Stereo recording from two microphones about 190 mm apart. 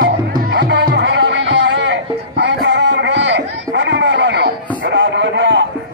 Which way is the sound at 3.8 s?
70° right (ahead or behind).